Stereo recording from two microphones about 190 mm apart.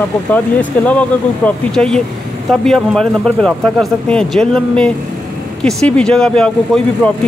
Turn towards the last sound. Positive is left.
turn(degrees=5)  # may be behind; listen again after turning